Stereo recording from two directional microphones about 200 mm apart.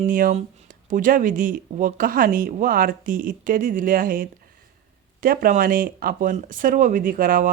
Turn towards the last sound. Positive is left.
turn(degrees=-45)  # may be behind; listen again after turning